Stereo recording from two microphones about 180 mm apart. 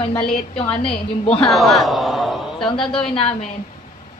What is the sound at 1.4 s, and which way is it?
A man's voice, centre (ahead or behind).